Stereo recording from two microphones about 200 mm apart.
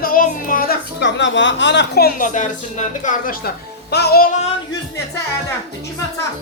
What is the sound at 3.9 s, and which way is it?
Speech, 55° left (ahead or behind).